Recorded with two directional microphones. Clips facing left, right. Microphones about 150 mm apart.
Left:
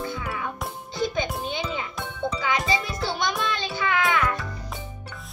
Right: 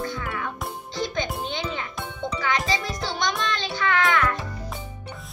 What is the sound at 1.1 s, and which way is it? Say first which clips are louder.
Music: left 1 dB; 10° left (ahead or behind).